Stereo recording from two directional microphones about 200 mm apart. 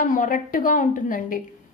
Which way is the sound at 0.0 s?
40° left (ahead or behind).